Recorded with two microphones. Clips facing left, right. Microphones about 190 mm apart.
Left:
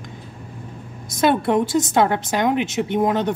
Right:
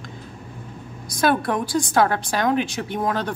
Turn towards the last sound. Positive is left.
turn(degrees=20)  # may be behind; listen again after turning